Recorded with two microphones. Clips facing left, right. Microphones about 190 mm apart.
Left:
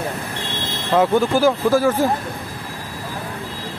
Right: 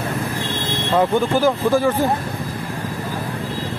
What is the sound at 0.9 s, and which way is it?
Speech, 5° left (ahead or behind).